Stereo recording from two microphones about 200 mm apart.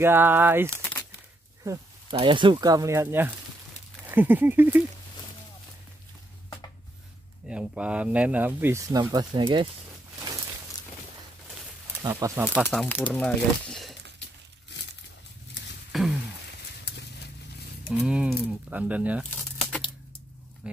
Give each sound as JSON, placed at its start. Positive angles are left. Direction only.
{"t": 0.0, "sound": "speech", "side_deg": -10}
{"t": 7.4, "sound": "speech", "side_deg": -5}
{"t": 12.0, "sound": "speech", "side_deg": -15}
{"t": 12.6, "sound": "speech", "side_deg": 10}
{"t": 15.9, "sound": "a sound", "side_deg": 0}
{"t": 18.0, "sound": "speech", "side_deg": -5}
{"t": 20.6, "sound": "speech", "side_deg": -5}